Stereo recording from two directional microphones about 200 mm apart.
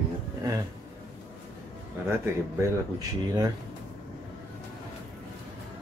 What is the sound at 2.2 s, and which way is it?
Speech, 15° right (ahead or behind).